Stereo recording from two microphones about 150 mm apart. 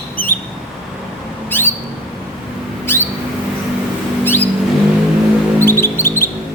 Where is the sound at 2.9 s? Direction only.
15° left (ahead or behind).